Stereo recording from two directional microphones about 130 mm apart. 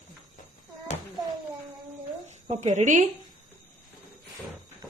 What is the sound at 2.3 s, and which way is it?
Speech, 65° right (ahead or behind).